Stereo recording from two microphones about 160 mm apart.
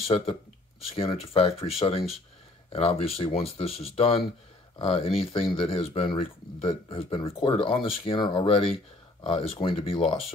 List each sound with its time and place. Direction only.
0.0 s speech: 35° left (ahead or behind)